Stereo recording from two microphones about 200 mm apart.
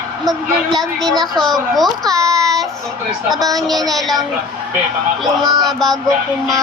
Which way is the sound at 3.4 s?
20° right (ahead or behind).